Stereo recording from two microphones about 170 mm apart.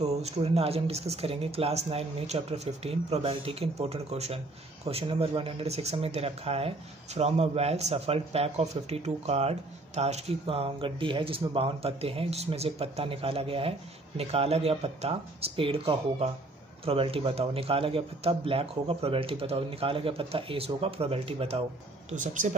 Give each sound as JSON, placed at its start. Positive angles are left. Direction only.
{"t": 0.0, "sound": "speech", "side_deg": -35}
{"t": 22.1, "sound": "speech", "side_deg": -50}